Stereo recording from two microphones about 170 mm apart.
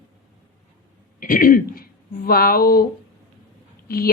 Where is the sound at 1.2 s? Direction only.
55° left (ahead or behind).